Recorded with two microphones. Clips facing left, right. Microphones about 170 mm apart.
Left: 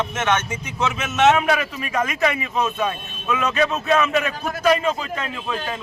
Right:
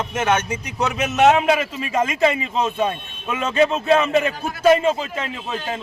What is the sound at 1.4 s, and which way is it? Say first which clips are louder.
Speech: right 2 dB; 25° right (ahead or behind).